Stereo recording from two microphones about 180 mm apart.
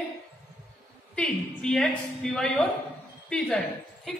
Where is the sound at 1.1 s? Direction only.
5° left (ahead or behind).